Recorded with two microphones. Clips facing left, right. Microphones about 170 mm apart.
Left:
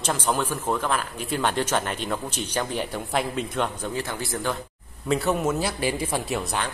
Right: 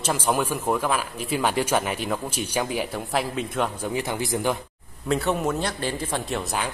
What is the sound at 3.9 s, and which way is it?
Speech, 15° right (ahead or behind).